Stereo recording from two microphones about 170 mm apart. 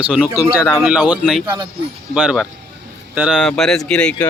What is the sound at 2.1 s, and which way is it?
Speech, 5° right (ahead or behind).